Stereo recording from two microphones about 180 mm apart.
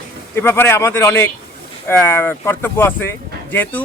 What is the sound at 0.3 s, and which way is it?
Speech, 15° left (ahead or behind).